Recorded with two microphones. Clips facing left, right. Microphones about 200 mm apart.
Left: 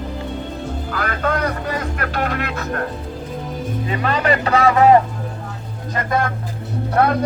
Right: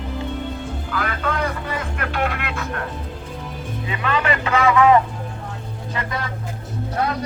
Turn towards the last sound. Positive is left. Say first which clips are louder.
# left 6 dB
turn(degrees=60)  # may be behind; listen again after turning